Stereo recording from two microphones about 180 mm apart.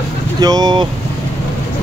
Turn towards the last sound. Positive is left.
turn(degrees=-25)  # may be behind; listen again after turning